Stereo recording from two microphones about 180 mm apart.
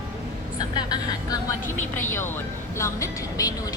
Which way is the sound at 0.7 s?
20° left (ahead or behind).